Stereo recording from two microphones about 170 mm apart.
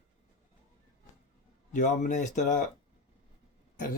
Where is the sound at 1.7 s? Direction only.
45° left (ahead or behind).